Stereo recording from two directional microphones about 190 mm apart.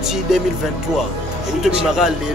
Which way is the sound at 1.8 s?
5° right (ahead or behind).